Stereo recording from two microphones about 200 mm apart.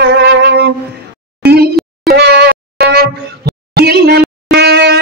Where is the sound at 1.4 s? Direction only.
50° right (ahead or behind).